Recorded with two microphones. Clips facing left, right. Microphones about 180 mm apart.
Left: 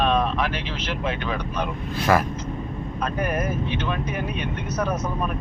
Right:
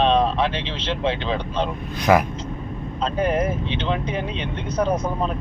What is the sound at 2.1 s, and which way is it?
Speech, 10° right (ahead or behind).